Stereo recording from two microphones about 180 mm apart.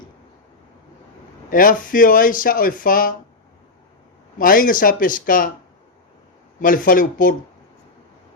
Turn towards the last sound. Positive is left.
turn(degrees=50)  # may be behind; listen again after turning